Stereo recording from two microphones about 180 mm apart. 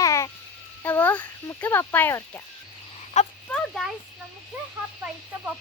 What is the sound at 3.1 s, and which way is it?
Speech, 40° left (ahead or behind).